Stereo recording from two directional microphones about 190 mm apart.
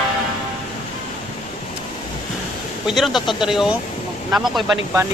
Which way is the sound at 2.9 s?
Centre (ahead or behind).